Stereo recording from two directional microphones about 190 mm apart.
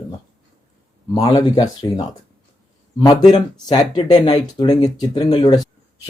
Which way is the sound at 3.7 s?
20° left (ahead or behind).